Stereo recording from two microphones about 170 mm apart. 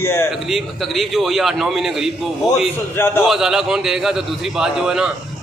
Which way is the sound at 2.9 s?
15° left (ahead or behind).